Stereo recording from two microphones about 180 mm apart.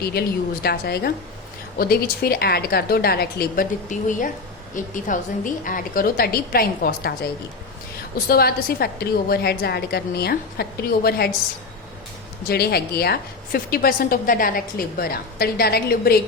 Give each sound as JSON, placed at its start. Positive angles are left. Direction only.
{"t": 0.0, "sound": "a woman's voice", "side_deg": 60}
{"t": 8.3, "sound": "a woman's voice", "side_deg": 60}
{"t": 12.5, "sound": "a woman's voice", "side_deg": 60}